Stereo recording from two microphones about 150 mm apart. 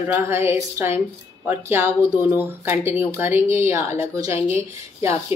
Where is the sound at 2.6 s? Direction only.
15° right (ahead or behind).